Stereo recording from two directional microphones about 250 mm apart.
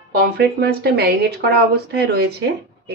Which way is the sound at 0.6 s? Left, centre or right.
Right.